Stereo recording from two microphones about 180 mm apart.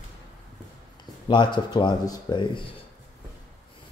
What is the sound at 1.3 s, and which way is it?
Speech, 25° left (ahead or behind).